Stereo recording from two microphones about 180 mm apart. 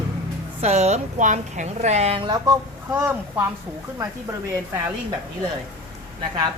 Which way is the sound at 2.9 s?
10° right (ahead or behind).